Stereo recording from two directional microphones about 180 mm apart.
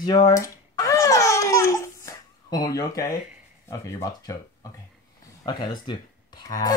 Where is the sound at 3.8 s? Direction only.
20° left (ahead or behind).